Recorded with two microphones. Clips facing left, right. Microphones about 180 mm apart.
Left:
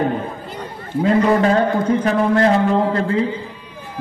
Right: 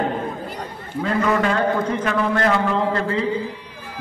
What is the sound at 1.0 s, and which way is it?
A man's voice, 30° left (ahead or behind).